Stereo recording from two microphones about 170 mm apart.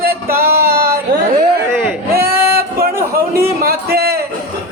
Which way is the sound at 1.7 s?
15° right (ahead or behind).